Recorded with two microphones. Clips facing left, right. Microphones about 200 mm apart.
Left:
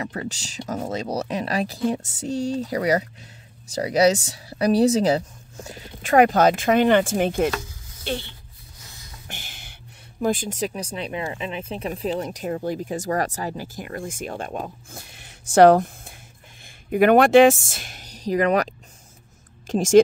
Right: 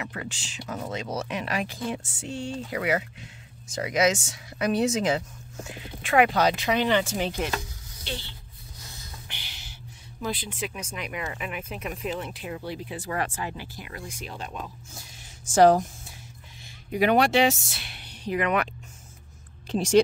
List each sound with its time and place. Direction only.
0.0 s speech: 35° left (ahead or behind); by 8.3 s 55° left (ahead or behind)
9.3 s a sound: 50° left (ahead or behind)
10.2 s speech: 45° left (ahead or behind); by 16.1 s 60° left (ahead or behind)
16.9 s speech: 50° left (ahead or behind)